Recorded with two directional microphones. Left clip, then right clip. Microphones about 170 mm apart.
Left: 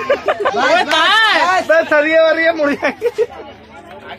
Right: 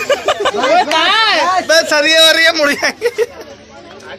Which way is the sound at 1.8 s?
25° right (ahead or behind).